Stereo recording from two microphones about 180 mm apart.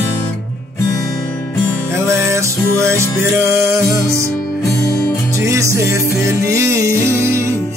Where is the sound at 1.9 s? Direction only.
15° right (ahead or behind).